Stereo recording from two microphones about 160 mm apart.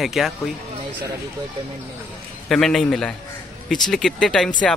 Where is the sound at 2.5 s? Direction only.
Centre (ahead or behind).